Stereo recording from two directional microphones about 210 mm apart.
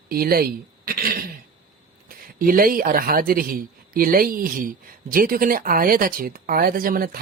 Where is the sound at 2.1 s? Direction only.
45° right (ahead or behind).